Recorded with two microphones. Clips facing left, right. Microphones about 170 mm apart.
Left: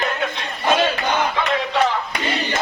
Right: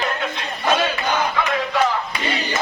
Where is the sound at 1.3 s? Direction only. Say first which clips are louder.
Even; 30° left (ahead or behind).